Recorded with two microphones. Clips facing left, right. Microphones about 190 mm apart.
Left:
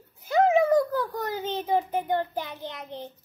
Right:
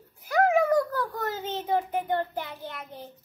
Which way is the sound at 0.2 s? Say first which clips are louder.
Left 2 dB; 25° left (ahead or behind).